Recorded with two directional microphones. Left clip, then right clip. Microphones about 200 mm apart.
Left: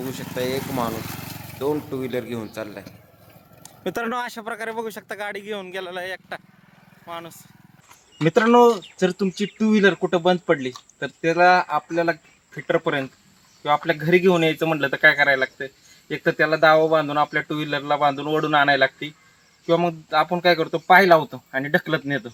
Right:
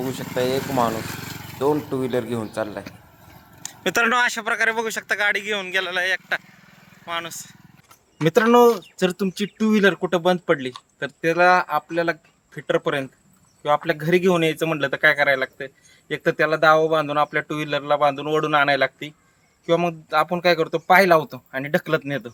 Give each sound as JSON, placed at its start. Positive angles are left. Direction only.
{"t": 0.3, "sound": "speech", "side_deg": -5}
{"t": 3.6, "sound": "speech", "side_deg": 5}
{"t": 8.2, "sound": "speech", "side_deg": -10}